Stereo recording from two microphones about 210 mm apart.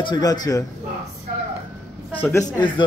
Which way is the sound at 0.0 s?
20° left (ahead or behind).